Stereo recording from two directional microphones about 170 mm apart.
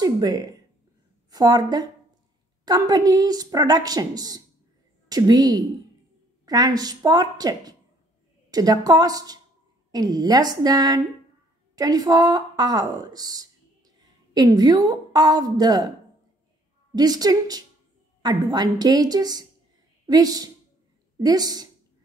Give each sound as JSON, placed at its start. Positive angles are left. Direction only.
{"t": 0.0, "sound": "a woman's voice", "side_deg": -20}
{"t": 16.9, "sound": "a woman's voice", "side_deg": -20}